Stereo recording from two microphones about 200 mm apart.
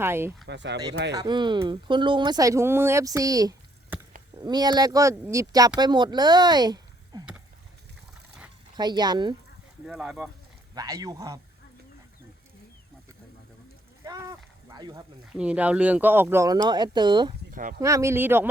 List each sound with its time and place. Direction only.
0.0 s speech: 10° right (ahead or behind)
0.4 s speech: 60° right (ahead or behind)
1.1 s speech: 20° right (ahead or behind)
8.7 s speech: 20° right (ahead or behind)
9.8 s speech: centre (ahead or behind)
10.8 s speech: 20° right (ahead or behind)
14.0 s a sound: 15° right (ahead or behind)
15.3 s speech: 5° right (ahead or behind); by 17.3 s 20° right (ahead or behind)
17.5 s speech: 40° right (ahead or behind)
17.7 s speech: 15° right (ahead or behind)